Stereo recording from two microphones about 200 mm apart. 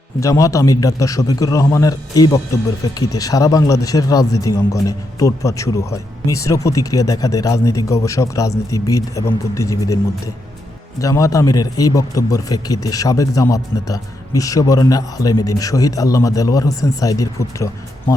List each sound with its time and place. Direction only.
0.2 s a man's voice: 15° left (ahead or behind)
11.0 s a man's voice: 15° left (ahead or behind)